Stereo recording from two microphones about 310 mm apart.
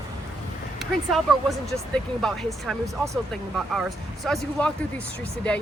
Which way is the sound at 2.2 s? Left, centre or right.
Centre.